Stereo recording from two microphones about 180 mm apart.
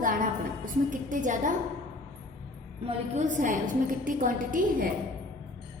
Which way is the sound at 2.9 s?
40° right (ahead or behind).